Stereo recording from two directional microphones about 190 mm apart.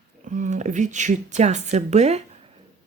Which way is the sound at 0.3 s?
40° right (ahead or behind).